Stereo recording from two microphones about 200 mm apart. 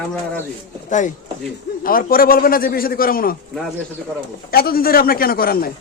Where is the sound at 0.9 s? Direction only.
40° left (ahead or behind).